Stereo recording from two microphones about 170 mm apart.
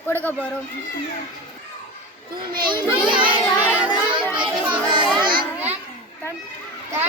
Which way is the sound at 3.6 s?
10° right (ahead or behind).